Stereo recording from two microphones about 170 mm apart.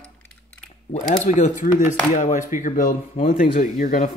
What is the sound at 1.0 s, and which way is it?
Speech, 50° left (ahead or behind).